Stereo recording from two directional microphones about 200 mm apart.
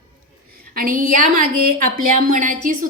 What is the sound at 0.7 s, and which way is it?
A woman's voice, 45° right (ahead or behind).